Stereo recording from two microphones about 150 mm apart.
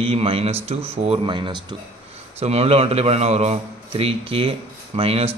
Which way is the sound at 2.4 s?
45° right (ahead or behind).